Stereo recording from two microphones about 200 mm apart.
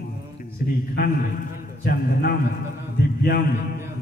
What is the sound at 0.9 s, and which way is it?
A man's voice, 45° left (ahead or behind).